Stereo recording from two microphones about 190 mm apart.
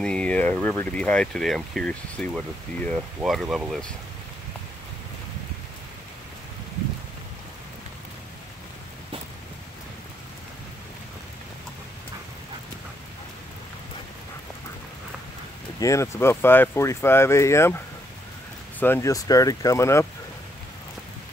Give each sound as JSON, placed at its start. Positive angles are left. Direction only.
{"t": 0.0, "sound": "speech", "side_deg": 5}
{"t": 15.8, "sound": "speech", "side_deg": 15}